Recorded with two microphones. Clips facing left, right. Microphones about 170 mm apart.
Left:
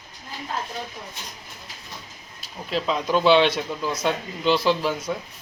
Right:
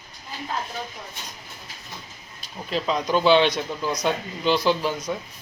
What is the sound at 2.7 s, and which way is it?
Speech, centre (ahead or behind).